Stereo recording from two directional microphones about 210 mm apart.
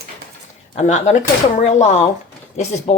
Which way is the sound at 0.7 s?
35° left (ahead or behind).